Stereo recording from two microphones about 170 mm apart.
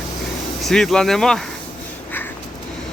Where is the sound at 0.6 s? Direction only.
Centre (ahead or behind).